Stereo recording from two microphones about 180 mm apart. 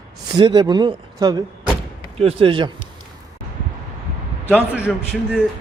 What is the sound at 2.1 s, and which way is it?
Speech, 35° right (ahead or behind).